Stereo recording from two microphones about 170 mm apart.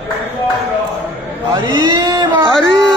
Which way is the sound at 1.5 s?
25° right (ahead or behind).